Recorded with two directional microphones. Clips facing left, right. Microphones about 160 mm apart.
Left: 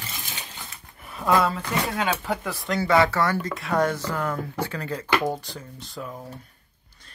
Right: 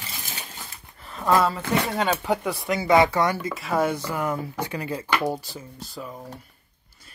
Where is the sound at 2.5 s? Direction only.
15° right (ahead or behind).